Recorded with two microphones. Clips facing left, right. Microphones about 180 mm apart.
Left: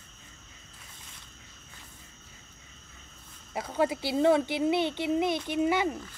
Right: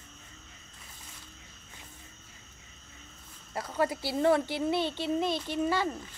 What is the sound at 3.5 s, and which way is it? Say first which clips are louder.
A woman's voice: left 2 dB; 20° left (ahead or behind).